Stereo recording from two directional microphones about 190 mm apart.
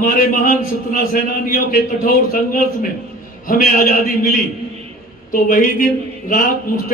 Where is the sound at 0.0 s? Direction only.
50° left (ahead or behind).